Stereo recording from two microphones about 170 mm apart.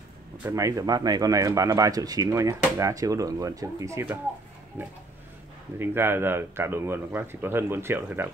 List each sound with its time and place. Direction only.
0.5 s speech: 20° right (ahead or behind)